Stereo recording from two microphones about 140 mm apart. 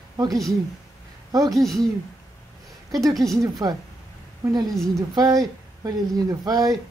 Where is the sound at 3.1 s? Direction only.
Centre (ahead or behind).